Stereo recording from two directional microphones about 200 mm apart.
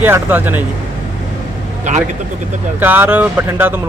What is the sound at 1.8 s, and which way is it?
Speech, 35° right (ahead or behind).